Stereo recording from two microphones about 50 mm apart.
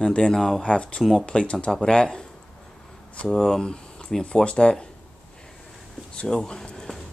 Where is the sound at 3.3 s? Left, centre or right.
Centre.